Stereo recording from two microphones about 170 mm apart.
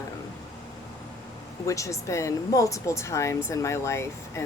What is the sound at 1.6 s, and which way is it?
Speech, 20° left (ahead or behind).